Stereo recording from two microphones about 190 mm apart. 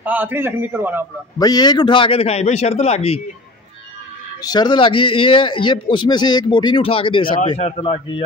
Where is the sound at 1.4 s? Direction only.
20° left (ahead or behind).